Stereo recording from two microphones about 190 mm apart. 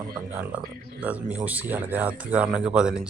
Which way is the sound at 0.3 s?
10° right (ahead or behind).